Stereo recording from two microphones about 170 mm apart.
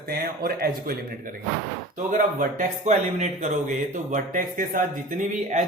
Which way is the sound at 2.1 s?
50° right (ahead or behind).